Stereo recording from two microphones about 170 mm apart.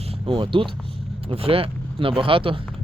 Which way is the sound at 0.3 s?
30° right (ahead or behind).